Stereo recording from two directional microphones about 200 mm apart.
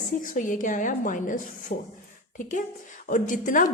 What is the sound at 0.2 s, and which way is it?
A woman's voice, 40° left (ahead or behind).